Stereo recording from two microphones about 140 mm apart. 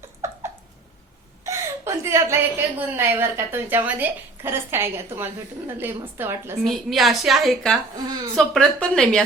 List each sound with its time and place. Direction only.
0.2 s a sound: 20° right (ahead or behind)
1.5 s a woman's voice: 20° right (ahead or behind)
6.7 s a woman's voice: centre (ahead or behind)